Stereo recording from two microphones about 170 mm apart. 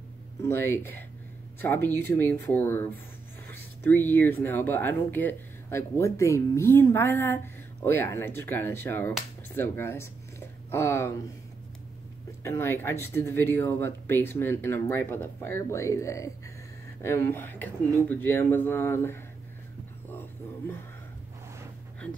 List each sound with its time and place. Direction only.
0.4 s speech: 15° left (ahead or behind)
12.4 s speech: 15° left (ahead or behind)
20.2 s a sound: 10° left (ahead or behind)